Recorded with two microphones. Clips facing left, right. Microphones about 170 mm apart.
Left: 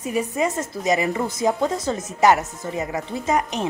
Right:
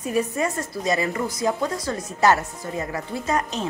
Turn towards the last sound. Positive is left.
turn(degrees=20)  # may be behind; listen again after turning